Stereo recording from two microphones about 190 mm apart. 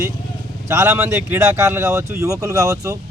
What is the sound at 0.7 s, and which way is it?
A man's voice, 15° right (ahead or behind).